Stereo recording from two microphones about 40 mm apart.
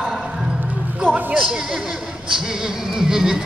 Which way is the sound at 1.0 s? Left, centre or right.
Left.